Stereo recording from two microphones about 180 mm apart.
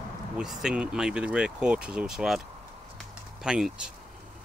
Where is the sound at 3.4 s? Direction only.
5° right (ahead or behind).